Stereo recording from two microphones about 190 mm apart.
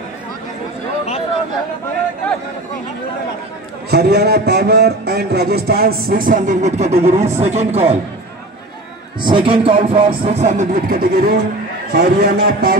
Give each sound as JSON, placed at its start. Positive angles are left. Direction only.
{"t": 3.9, "sound": "a man's voice", "side_deg": -60}
{"t": 9.2, "sound": "a man's voice", "side_deg": -25}